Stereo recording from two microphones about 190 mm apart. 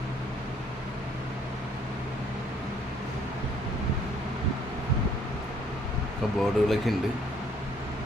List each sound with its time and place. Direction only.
6.4 s speech: centre (ahead or behind)